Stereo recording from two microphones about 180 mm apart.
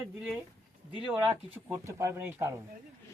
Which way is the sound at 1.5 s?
15° right (ahead or behind).